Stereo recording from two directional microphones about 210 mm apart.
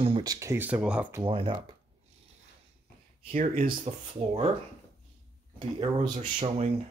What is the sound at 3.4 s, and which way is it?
Speech, 40° right (ahead or behind).